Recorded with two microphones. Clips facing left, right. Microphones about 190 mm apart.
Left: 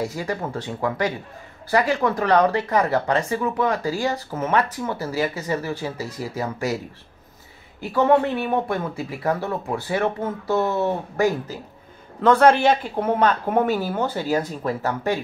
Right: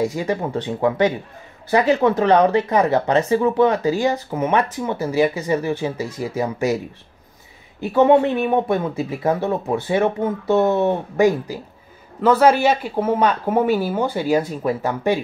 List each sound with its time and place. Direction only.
0.0 s speech: 20° right (ahead or behind)
7.8 s speech: 20° right (ahead or behind)